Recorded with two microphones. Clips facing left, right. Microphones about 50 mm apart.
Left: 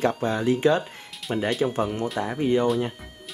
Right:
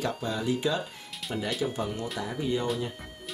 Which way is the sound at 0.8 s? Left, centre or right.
Centre.